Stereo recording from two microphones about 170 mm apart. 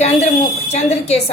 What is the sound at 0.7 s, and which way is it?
Speech, 40° left (ahead or behind).